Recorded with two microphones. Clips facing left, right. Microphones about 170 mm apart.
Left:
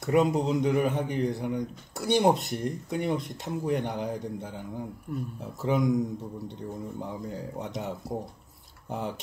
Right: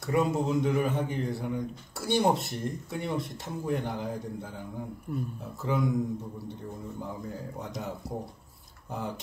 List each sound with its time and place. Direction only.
0.0 s speech: 20° left (ahead or behind)
5.6 s speech: 20° left (ahead or behind)
7.5 s speech: 20° left (ahead or behind)